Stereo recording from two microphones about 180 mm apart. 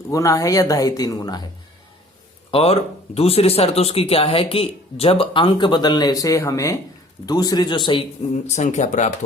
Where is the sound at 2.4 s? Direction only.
30° left (ahead or behind).